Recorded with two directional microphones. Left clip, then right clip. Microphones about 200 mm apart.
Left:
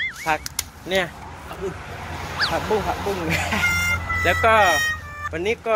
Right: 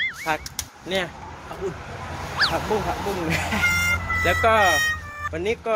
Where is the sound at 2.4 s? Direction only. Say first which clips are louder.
Right 1 dB; centre (ahead or behind).